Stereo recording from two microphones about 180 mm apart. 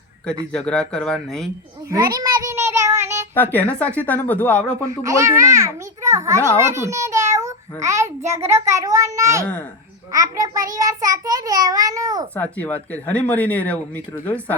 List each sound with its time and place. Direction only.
0.5 s speech: 5° left (ahead or behind)
1.9 s a child's voice: 20° right (ahead or behind)
3.3 s speech: 10° left (ahead or behind)
4.9 s a child's voice: 15° right (ahead or behind)
12.3 s speech: 10° left (ahead or behind)